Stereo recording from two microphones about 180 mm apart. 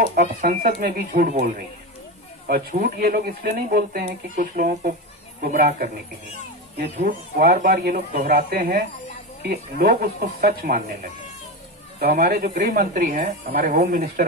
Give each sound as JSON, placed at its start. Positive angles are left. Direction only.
{"t": 0.0, "sound": "speech", "side_deg": -50}
{"t": 2.7, "sound": "speech", "side_deg": -50}
{"t": 7.0, "sound": "speech", "side_deg": -50}